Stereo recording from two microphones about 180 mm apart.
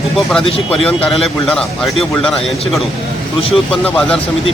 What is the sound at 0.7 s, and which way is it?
A man's voice, 5° left (ahead or behind).